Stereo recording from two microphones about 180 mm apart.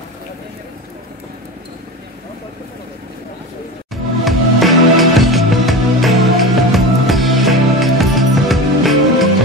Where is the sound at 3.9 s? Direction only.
Centre (ahead or behind).